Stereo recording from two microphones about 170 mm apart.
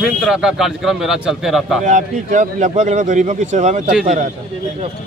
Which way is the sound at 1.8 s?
50° right (ahead or behind).